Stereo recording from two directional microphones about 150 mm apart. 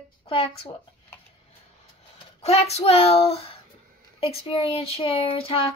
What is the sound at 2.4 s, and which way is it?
Speech, 45° left (ahead or behind).